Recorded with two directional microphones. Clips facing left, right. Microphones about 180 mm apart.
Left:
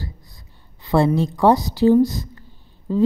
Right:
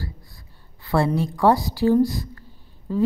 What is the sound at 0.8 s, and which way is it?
A woman's voice, 20° left (ahead or behind).